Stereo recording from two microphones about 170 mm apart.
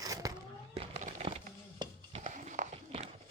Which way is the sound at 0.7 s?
35° right (ahead or behind).